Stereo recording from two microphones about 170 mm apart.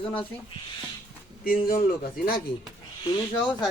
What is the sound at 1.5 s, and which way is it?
Speech, 55° left (ahead or behind).